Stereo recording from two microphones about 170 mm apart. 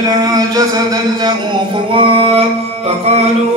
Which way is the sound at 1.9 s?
30° right (ahead or behind).